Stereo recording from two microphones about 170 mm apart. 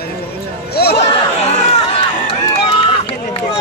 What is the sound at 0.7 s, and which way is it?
Chatter, 70° left (ahead or behind).